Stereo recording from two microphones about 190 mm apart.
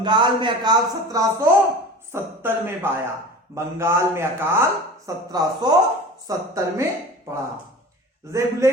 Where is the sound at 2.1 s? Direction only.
10° right (ahead or behind).